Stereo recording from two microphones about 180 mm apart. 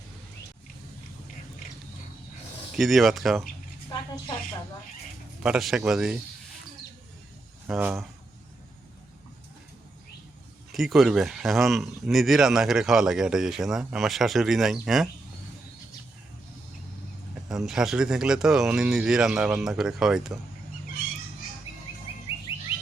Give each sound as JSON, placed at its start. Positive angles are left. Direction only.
{"t": 2.7, "sound": "speech", "side_deg": 0}
{"t": 3.8, "sound": "speech", "side_deg": 25}
{"t": 5.4, "sound": "speech", "side_deg": 0}
{"t": 7.7, "sound": "speech", "side_deg": -5}
{"t": 10.7, "sound": "speech", "side_deg": 0}
{"t": 17.5, "sound": "speech", "side_deg": 0}